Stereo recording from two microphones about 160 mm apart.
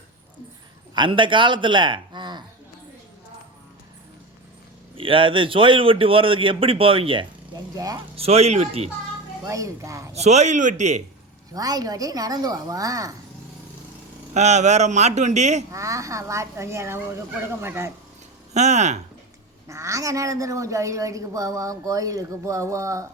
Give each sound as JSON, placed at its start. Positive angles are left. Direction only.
{"t": 0.9, "sound": "a man's voice", "side_deg": -30}
{"t": 4.9, "sound": "a man's voice", "side_deg": -35}
{"t": 7.8, "sound": "a woman's voice", "side_deg": -20}
{"t": 8.1, "sound": "a man's voice", "side_deg": -40}
{"t": 9.4, "sound": "a woman's voice", "side_deg": -20}
{"t": 10.2, "sound": "a man's voice", "side_deg": -45}
{"t": 11.5, "sound": "a woman's voice", "side_deg": -25}
{"t": 14.3, "sound": "a man's voice", "side_deg": -45}
{"t": 15.7, "sound": "a woman's voice", "side_deg": -20}
{"t": 18.5, "sound": "a man's voice", "side_deg": -45}
{"t": 19.6, "sound": "a woman's voice", "side_deg": -20}